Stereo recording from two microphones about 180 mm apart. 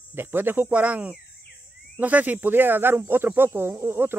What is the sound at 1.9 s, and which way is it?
Speech, 10° right (ahead or behind).